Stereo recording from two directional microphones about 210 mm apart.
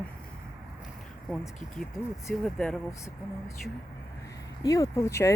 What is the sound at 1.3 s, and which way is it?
Speech, 5° left (ahead or behind).